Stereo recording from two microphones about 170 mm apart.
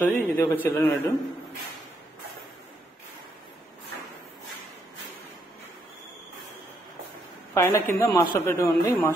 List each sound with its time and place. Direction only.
0.0 s a man's voice: 10° left (ahead or behind)
7.5 s a man's voice: 15° left (ahead or behind)